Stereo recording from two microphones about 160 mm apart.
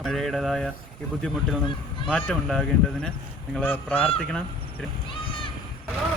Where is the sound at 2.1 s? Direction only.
5° left (ahead or behind).